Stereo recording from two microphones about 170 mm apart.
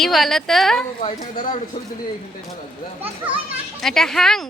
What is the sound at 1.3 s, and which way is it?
Speech, 50° left (ahead or behind).